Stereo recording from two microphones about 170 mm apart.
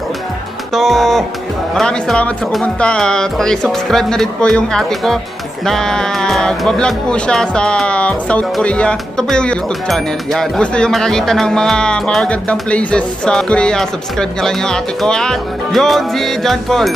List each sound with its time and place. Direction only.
0.7 s speech: centre (ahead or behind)